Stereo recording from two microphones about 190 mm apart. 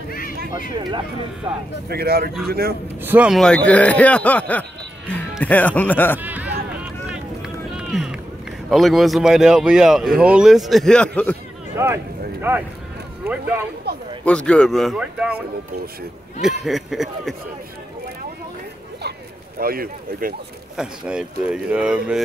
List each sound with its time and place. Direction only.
1.9 s speech: 55° right (ahead or behind)
3.0 s speech: 10° right (ahead or behind); by 6.1 s 10° left (ahead or behind)
6.1 s run: 10° right (ahead or behind)
11.7 s speech: 15° right (ahead or behind)
13.9 s speech: 60° right (ahead or behind)
14.2 s speech: 5° left (ahead or behind)
19.6 s speech: 50° right (ahead or behind)
20.7 s speech: 5° right (ahead or behind)